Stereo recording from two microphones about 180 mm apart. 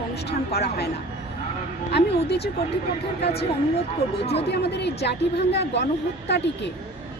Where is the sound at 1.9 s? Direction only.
65° left (ahead or behind).